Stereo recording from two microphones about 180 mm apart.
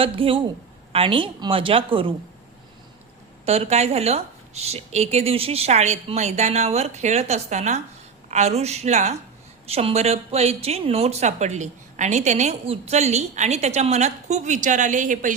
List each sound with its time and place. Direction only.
0.0 s a woman's voice: 30° right (ahead or behind)
3.4 s speech: 35° right (ahead or behind)